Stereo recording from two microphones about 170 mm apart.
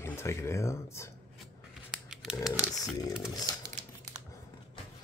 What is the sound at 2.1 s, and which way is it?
Speech, 5° right (ahead or behind).